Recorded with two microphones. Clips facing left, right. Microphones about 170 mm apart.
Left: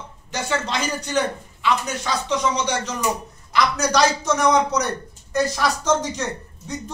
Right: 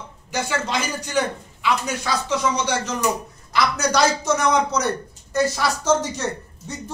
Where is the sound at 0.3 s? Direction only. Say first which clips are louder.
Even; 10° right (ahead or behind).